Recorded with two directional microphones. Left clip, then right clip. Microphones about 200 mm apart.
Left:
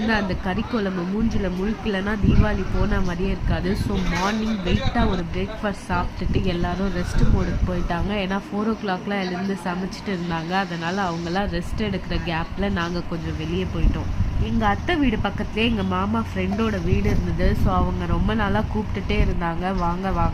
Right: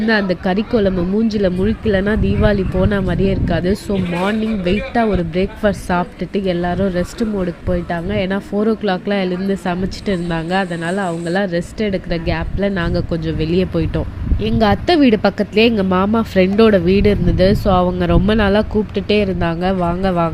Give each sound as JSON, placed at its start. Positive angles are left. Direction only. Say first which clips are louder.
{"t": 0.1, "sound": "speech", "louder": "right 9 dB", "side_deg": -25}